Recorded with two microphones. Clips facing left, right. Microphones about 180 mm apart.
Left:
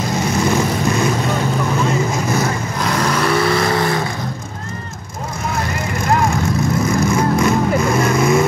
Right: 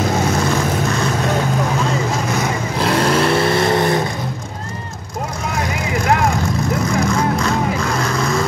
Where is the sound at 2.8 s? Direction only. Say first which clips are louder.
Right 3 dB; 30° right (ahead or behind).